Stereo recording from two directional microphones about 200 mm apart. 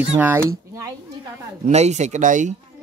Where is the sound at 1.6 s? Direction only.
35° right (ahead or behind).